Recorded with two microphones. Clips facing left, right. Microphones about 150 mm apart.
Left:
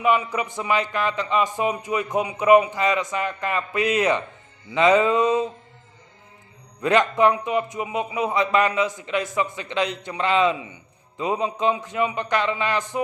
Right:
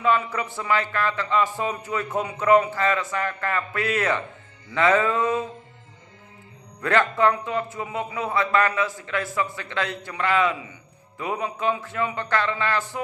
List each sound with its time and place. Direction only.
0.0 s a man's voice: 15° left (ahead or behind)
6.8 s a man's voice: 15° left (ahead or behind)